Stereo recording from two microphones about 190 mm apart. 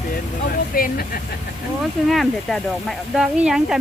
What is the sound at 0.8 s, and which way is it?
Speech, 50° left (ahead or behind).